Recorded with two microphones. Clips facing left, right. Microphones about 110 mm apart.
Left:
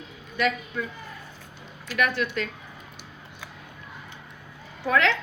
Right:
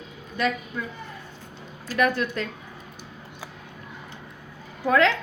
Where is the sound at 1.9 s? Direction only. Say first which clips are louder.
Right 3 dB; 35° right (ahead or behind).